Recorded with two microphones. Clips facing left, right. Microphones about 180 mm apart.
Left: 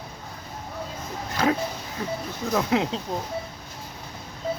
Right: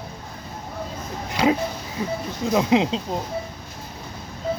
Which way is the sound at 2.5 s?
20° right (ahead or behind).